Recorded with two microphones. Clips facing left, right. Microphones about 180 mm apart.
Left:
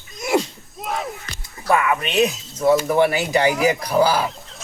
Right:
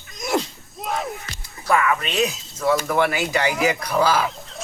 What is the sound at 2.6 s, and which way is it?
Music, 20° left (ahead or behind).